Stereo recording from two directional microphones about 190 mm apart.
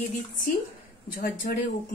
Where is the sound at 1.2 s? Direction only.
45° left (ahead or behind).